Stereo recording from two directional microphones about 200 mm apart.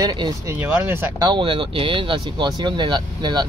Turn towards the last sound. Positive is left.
turn(degrees=-20)  # may be behind; listen again after turning